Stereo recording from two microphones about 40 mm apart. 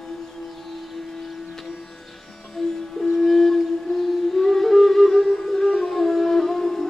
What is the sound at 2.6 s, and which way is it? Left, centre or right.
Music, centre.